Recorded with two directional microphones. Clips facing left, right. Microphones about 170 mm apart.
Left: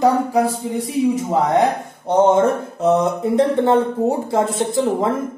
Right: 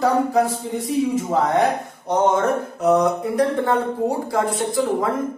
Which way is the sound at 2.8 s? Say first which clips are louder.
Left 1 dB; 25° left (ahead or behind).